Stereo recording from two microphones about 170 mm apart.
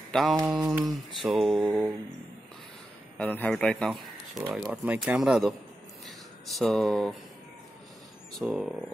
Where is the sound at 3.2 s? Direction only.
10° left (ahead or behind).